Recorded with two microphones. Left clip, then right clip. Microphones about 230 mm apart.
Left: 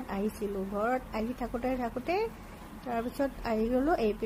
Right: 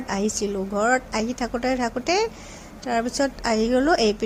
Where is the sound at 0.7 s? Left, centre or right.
Centre.